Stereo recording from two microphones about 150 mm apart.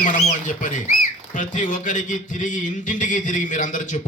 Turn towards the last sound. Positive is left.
turn(degrees=55)  # may be behind; listen again after turning